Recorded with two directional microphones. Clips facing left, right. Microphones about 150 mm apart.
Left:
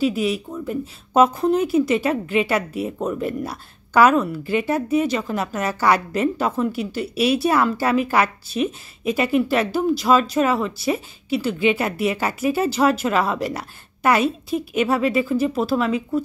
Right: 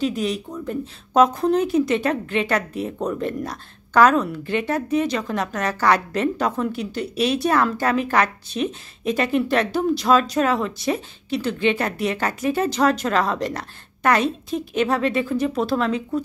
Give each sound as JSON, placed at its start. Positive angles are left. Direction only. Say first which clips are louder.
{"t": 0.0, "sound": "speech", "louder": "left 2 dB", "side_deg": 5}